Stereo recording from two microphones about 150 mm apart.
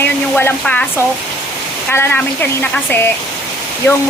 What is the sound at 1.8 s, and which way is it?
Speech, 15° left (ahead or behind).